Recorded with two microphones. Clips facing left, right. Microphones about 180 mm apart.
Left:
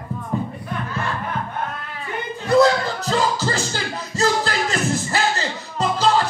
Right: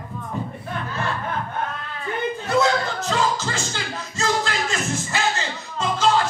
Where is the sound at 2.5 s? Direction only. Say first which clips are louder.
Left 6 dB; 35° left (ahead or behind).